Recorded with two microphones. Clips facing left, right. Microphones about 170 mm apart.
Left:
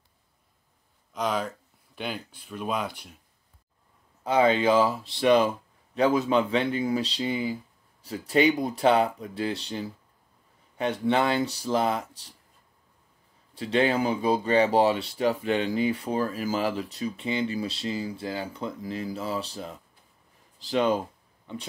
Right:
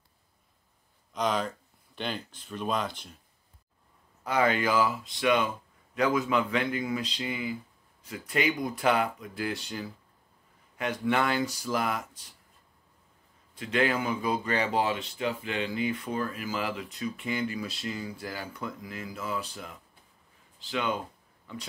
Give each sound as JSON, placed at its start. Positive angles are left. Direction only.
{"t": 1.1, "sound": "speech", "side_deg": 5}
{"t": 4.2, "sound": "speech", "side_deg": 25}
{"t": 13.6, "sound": "speech", "side_deg": 30}